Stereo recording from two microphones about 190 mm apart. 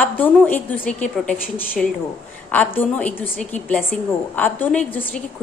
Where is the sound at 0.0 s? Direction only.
10° left (ahead or behind).